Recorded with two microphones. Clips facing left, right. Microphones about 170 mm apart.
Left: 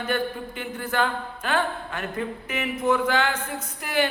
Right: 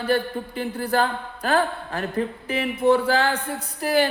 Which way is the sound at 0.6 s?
35° right (ahead or behind).